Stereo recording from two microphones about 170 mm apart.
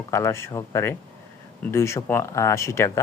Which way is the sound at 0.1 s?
15° left (ahead or behind).